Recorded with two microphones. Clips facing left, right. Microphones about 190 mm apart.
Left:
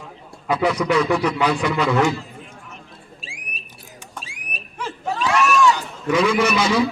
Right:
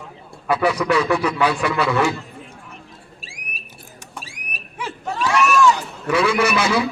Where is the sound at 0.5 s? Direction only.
10° right (ahead or behind).